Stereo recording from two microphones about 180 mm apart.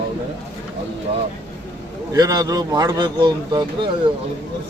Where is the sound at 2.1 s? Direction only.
20° right (ahead or behind).